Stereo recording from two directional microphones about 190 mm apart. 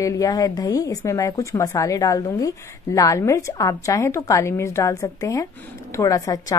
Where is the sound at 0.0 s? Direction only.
20° left (ahead or behind).